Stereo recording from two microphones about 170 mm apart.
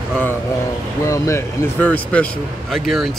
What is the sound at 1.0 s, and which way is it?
Speech, 15° left (ahead or behind).